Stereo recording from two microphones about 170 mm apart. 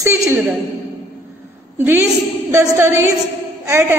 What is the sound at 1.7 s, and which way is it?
A woman's voice, 15° right (ahead or behind).